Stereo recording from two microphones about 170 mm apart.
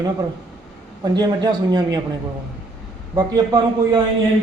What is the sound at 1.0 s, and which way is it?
A man's voice, 25° right (ahead or behind).